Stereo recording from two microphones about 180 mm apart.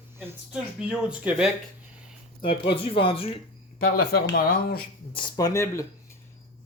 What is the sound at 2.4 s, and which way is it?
Speech, 30° left (ahead or behind).